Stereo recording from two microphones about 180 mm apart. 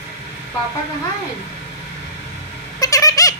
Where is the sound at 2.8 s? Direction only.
20° left (ahead or behind).